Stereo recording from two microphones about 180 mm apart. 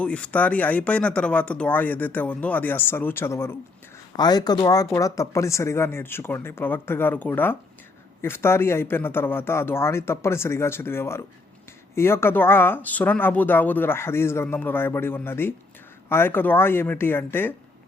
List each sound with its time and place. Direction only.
0.0 s speech: 5° left (ahead or behind)